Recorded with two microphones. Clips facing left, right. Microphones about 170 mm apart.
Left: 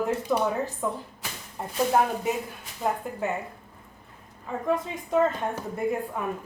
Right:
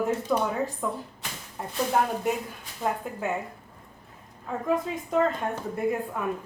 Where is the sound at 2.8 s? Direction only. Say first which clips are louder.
Left 1 dB; centre (ahead or behind).